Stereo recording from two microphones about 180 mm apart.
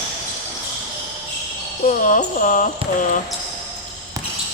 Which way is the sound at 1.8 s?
45° left (ahead or behind).